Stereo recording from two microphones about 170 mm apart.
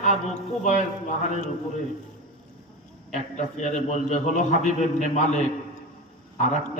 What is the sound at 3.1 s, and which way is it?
A man's voice, 45° left (ahead or behind).